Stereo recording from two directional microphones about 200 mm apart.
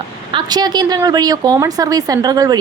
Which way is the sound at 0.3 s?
20° right (ahead or behind).